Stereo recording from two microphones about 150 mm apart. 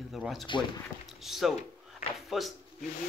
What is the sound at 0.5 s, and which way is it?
Speech, 30° left (ahead or behind).